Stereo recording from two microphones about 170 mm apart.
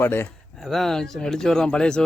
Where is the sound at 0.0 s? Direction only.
15° left (ahead or behind).